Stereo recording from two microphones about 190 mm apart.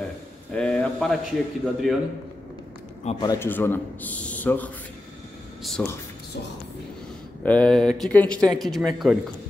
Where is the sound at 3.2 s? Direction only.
15° left (ahead or behind).